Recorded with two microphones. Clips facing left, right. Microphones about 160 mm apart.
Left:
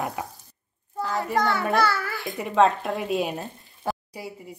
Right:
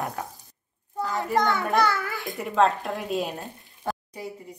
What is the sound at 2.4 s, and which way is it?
A woman's voice, centre (ahead or behind).